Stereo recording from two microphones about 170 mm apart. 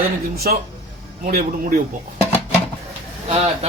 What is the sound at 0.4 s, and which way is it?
Speech, 60° right (ahead or behind).